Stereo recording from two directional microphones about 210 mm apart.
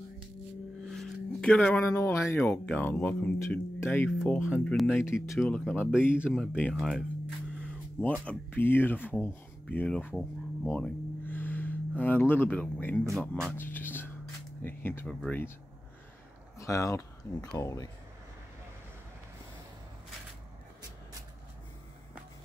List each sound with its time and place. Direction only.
0.8 s speech: centre (ahead or behind)
5.3 s speech: centre (ahead or behind)
8.3 s speech: 10° left (ahead or behind)
13.5 s a sound: 10° left (ahead or behind)
14.6 s speech: 10° left (ahead or behind)
16.5 s speech: 15° left (ahead or behind)